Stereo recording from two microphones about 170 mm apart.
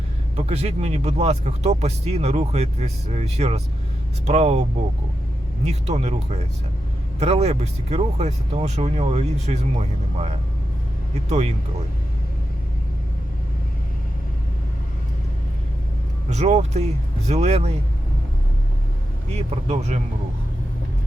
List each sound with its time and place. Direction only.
0.3 s speech: 40° right (ahead or behind)
5.6 s speech: 40° right (ahead or behind)
11.3 s speech: 40° right (ahead or behind)
16.3 s speech: 40° right (ahead or behind)
19.3 s speech: 40° right (ahead or behind)